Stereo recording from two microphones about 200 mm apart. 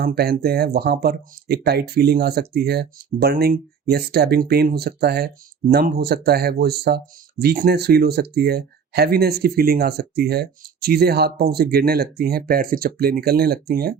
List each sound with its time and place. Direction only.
0.0 s speech: 50° right (ahead or behind)